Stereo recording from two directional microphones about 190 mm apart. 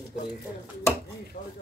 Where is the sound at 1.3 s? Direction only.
50° left (ahead or behind).